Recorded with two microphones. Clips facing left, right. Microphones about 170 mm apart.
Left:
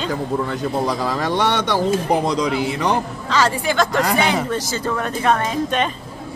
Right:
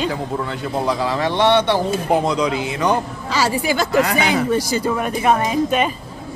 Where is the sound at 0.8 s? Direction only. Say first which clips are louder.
Right 1 dB; 45° left (ahead or behind).